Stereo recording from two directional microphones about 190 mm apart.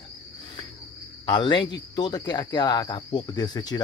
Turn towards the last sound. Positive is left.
turn(degrees=20)  # may be behind; listen again after turning